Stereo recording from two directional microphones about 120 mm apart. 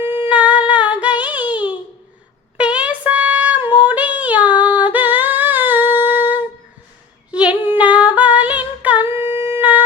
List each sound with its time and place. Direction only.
0.0 s humming: 15° right (ahead or behind)
2.6 s a sound: 10° right (ahead or behind)
3.8 s singing: 15° right (ahead or behind)
5.9 s humming: 15° right (ahead or behind)
7.3 s female singing: 10° right (ahead or behind)